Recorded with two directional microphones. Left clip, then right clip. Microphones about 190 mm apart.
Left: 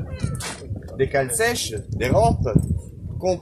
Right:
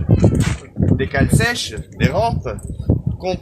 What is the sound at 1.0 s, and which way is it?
A man's voice, 5° left (ahead or behind).